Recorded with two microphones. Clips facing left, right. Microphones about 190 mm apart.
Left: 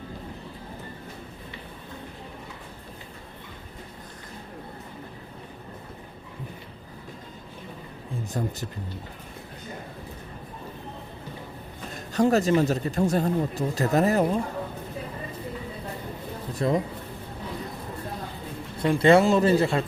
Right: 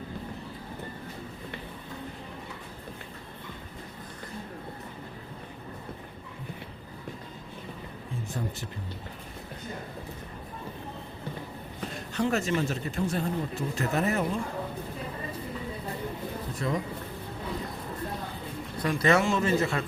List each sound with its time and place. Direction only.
8.4 s speech: 40° left (ahead or behind)
11.9 s speech: 40° left (ahead or behind)
16.6 s speech: 35° left (ahead or behind)
18.8 s speech: 30° left (ahead or behind)